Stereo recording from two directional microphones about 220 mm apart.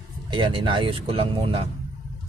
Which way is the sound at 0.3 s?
20° right (ahead or behind).